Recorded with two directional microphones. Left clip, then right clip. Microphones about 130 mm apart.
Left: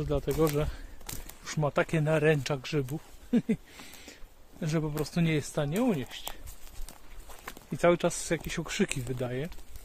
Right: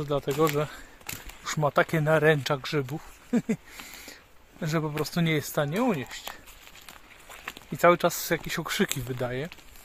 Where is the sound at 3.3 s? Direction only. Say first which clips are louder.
Right 1 dB; 5° left (ahead or behind).